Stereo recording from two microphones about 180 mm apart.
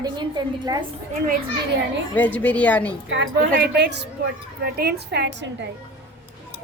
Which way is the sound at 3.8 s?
70° right (ahead or behind).